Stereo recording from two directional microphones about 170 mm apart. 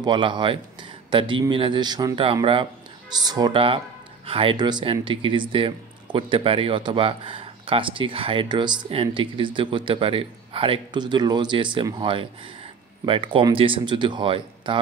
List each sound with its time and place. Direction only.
0.0 s speech: 25° right (ahead or behind)